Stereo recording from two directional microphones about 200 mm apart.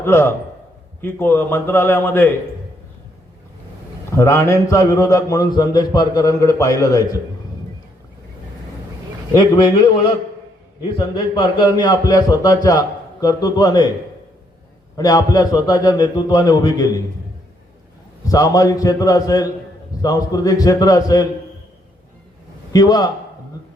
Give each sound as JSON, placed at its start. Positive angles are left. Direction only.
{"t": 0.0, "sound": "a man's voice", "side_deg": 10}
{"t": 4.1, "sound": "a man's voice", "side_deg": 15}
{"t": 10.9, "sound": "speech", "side_deg": 20}
{"t": 14.9, "sound": "speech", "side_deg": 20}
{"t": 18.3, "sound": "a man's voice", "side_deg": 15}
{"t": 22.7, "sound": "speech", "side_deg": 20}